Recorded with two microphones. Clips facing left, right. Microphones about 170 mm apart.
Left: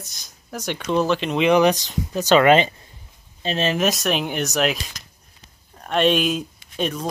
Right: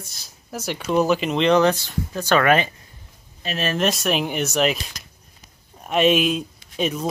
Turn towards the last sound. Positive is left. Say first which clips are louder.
# right 1 dB
turn(degrees=-5)  # may be behind; listen again after turning